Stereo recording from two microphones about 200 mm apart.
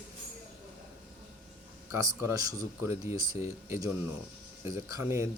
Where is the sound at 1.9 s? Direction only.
15° right (ahead or behind).